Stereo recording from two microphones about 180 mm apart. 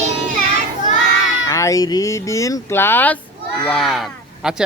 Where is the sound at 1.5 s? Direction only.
15° left (ahead or behind).